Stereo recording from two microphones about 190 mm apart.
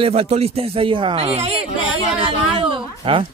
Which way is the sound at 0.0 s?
30° right (ahead or behind).